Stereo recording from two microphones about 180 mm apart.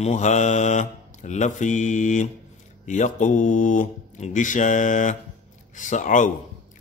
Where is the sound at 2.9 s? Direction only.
45° left (ahead or behind).